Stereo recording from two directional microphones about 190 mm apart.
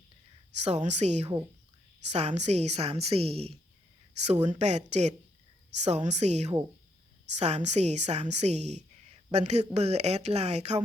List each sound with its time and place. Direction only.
0.6 s a woman's voice: 35° right (ahead or behind)